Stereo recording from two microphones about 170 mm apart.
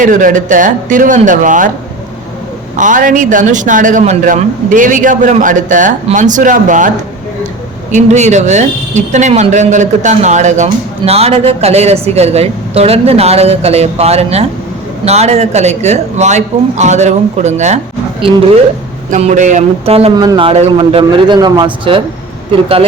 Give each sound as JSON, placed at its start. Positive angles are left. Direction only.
{"t": 0.0, "sound": "a man's voice", "side_deg": -50}
{"t": 2.7, "sound": "a man's voice", "side_deg": -50}
{"t": 7.9, "sound": "a man's voice", "side_deg": -40}
{"t": 19.1, "sound": "speech", "side_deg": -45}
{"t": 20.1, "sound": "a man's voice", "side_deg": -25}